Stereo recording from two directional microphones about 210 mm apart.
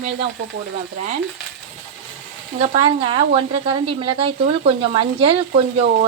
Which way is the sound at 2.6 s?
30° right (ahead or behind).